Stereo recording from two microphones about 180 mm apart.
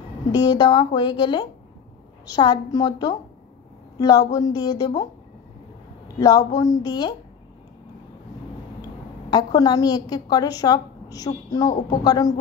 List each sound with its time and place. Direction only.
0.3 s a woman's voice: 25° left (ahead or behind)
6.1 s a woman's voice: 20° left (ahead or behind)
9.3 s a woman's voice: 20° left (ahead or behind)